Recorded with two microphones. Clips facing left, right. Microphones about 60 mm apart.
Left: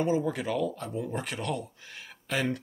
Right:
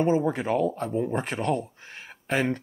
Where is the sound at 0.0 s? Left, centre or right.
Right.